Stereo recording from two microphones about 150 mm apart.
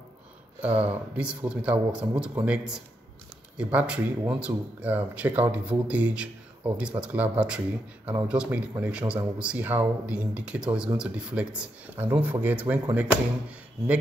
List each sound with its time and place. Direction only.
0.7 s speech: 40° right (ahead or behind)
1.1 s speech: 10° right (ahead or behind)